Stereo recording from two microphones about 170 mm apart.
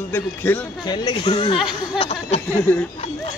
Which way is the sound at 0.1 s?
10° left (ahead or behind).